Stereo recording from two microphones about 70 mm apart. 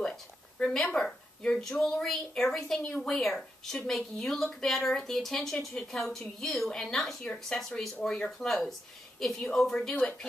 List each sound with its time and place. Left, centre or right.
0.0 s a sound: centre
0.9 s a woman's voice: centre
9.9 s a woman's voice: centre